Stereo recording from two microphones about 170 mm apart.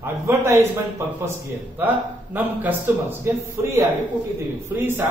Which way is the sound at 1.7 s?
10° right (ahead or behind).